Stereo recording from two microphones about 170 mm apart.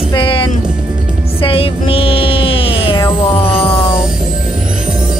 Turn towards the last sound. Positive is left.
turn(degrees=35)  # may be behind; listen again after turning